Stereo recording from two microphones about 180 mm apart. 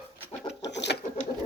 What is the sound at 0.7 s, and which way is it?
Patter, 75° left (ahead or behind).